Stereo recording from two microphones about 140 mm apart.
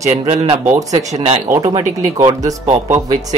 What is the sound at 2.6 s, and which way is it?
Speech, 50° right (ahead or behind).